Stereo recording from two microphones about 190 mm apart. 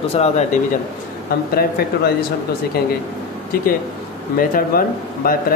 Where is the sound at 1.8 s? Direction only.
55° left (ahead or behind).